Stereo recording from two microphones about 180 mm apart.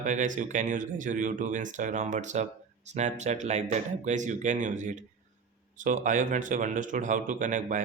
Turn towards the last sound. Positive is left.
turn(degrees=-45)  # may be behind; listen again after turning